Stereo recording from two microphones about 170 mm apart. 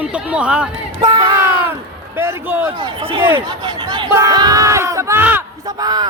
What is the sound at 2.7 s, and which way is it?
Speech, 30° right (ahead or behind).